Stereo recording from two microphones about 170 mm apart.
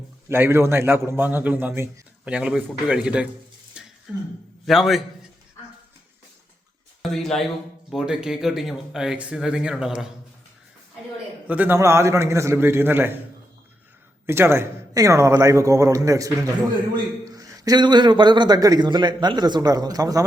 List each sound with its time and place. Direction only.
0.3 s a man's voice: 15° right (ahead or behind)
3.8 s a sound: 5° right (ahead or behind)
4.6 s speech: centre (ahead or behind)
7.0 s speech: centre (ahead or behind)
11.4 s a man's voice: 10° right (ahead or behind)
14.3 s a man's voice: 15° right (ahead or behind)